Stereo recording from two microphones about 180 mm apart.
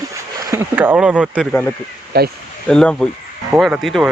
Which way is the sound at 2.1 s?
60° right (ahead or behind).